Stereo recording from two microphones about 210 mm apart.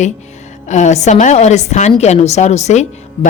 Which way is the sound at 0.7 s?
35° left (ahead or behind).